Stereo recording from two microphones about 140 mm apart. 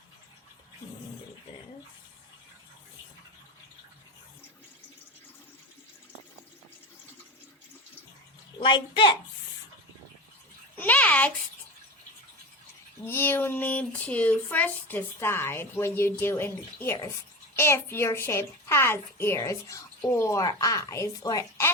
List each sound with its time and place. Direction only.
8.5 s a child's voice: 35° left (ahead or behind)
10.8 s a sound: 10° left (ahead or behind)
13.1 s a child's voice: 15° left (ahead or behind)